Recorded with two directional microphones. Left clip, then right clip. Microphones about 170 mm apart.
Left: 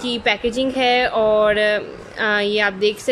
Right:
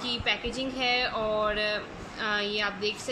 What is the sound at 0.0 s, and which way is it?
Speech, 45° left (ahead or behind).